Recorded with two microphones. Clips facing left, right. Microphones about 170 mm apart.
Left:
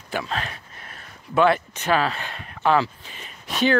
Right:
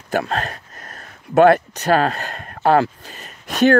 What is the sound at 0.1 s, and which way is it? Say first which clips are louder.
Speech: right 6 dB; 50° right (ahead or behind).